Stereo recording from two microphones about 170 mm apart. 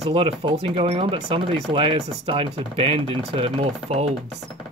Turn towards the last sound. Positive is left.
turn(degrees=-35)  # may be behind; listen again after turning